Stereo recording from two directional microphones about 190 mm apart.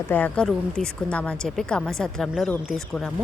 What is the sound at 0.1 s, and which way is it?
A woman's voice, 5° left (ahead or behind).